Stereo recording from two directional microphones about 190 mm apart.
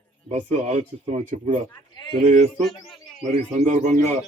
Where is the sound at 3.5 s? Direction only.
40° right (ahead or behind).